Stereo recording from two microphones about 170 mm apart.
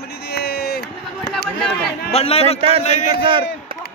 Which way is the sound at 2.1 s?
35° left (ahead or behind).